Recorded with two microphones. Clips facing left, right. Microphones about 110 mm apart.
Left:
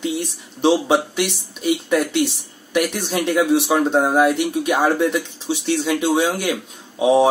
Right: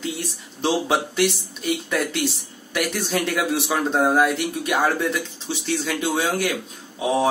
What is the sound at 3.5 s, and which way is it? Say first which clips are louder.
A man's voice: left 6 dB; 15° left (ahead or behind).